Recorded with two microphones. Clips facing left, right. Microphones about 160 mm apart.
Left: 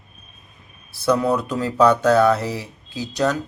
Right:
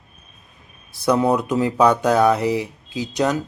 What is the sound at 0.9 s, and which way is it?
Speech, 15° right (ahead or behind).